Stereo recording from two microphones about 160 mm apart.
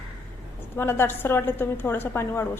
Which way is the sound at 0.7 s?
15° left (ahead or behind).